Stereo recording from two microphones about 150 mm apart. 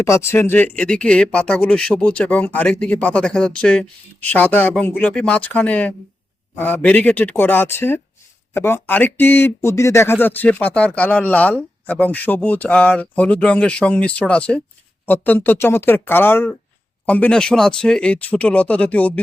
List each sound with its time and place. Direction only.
0.0 s speech: 20° left (ahead or behind)